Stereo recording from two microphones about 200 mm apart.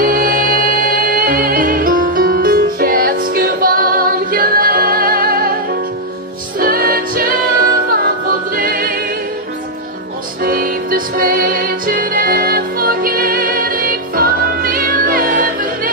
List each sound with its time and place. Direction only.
0.0 s music: 45° right (ahead or behind)
6.6 s music: 50° right (ahead or behind)
8.5 s choir: 45° right (ahead or behind)
10.4 s music: 45° right (ahead or behind)